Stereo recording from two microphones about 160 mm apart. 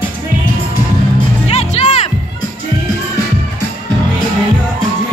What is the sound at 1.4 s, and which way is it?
Music, 40° left (ahead or behind).